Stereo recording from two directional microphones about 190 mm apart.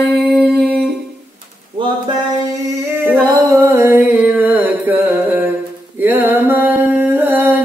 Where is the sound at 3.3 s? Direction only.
20° right (ahead or behind).